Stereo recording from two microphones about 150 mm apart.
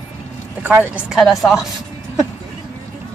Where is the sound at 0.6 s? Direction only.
10° right (ahead or behind).